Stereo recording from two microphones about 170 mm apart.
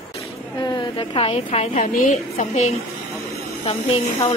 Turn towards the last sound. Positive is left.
turn(degrees=35)  # may be behind; listen again after turning